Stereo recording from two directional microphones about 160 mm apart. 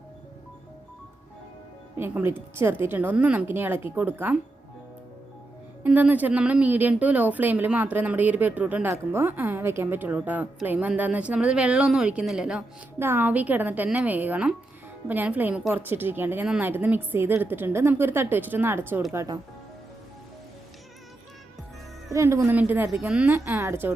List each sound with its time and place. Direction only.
2.0 s speech: 15° right (ahead or behind)
5.8 s speech: 10° right (ahead or behind)
22.1 s speech: 15° right (ahead or behind)